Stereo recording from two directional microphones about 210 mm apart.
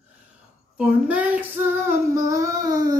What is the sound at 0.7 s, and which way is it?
Female singing, 5° right (ahead or behind).